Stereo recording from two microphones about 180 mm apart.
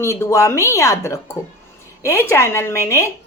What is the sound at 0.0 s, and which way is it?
A woman's voice, 15° left (ahead or behind).